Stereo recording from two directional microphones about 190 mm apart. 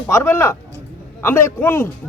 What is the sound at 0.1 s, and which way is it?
A man's voice, 15° left (ahead or behind).